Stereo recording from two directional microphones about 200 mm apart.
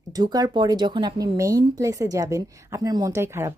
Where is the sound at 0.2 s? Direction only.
20° right (ahead or behind).